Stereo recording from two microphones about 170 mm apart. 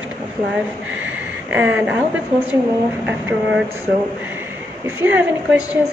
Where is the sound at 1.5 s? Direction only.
10° right (ahead or behind).